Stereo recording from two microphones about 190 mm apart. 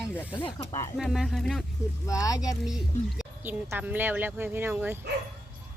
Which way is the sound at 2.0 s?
20° left (ahead or behind).